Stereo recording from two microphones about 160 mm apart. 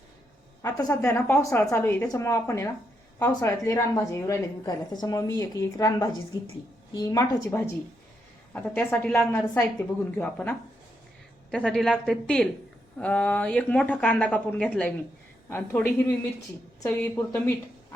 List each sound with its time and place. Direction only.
0.6 s a woman's voice: 20° left (ahead or behind)
8.5 s speech: 10° left (ahead or behind)
11.5 s a woman's voice: 5° left (ahead or behind)